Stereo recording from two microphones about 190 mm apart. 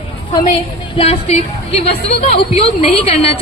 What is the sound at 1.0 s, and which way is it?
A woman's voice, 35° left (ahead or behind).